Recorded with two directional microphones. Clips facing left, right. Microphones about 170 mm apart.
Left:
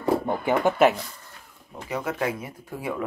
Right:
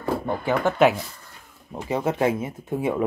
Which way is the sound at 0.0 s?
15° left (ahead or behind).